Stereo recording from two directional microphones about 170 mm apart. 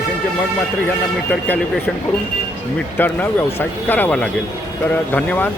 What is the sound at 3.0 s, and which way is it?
Speech, 10° left (ahead or behind).